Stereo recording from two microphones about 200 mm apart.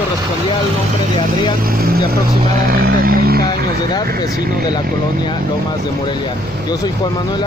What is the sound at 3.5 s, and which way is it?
Speech, 20° left (ahead or behind).